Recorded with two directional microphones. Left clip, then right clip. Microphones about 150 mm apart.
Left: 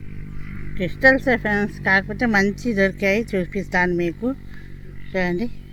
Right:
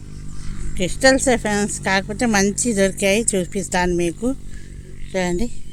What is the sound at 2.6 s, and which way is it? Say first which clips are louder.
Speech: right 2 dB; 45° right (ahead or behind).